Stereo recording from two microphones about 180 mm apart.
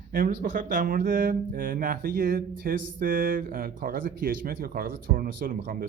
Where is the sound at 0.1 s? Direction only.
55° right (ahead or behind).